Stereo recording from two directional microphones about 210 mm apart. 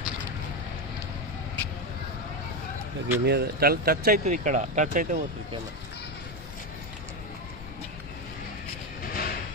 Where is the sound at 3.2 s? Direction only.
50° right (ahead or behind).